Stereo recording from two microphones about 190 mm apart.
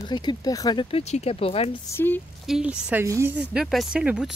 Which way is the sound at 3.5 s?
Centre (ahead or behind).